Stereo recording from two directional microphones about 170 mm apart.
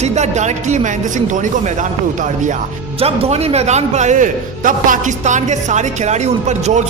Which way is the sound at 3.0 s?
35° right (ahead or behind).